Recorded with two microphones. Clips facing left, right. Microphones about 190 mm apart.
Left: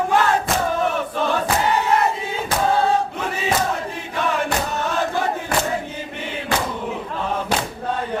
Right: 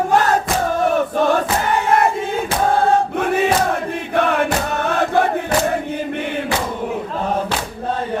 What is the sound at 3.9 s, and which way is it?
Crowd, 60° right (ahead or behind).